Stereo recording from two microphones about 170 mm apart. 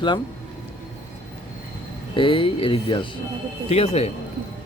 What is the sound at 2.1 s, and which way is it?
A man's voice, 30° left (ahead or behind).